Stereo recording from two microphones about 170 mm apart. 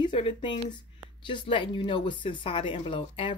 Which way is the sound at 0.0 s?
30° left (ahead or behind).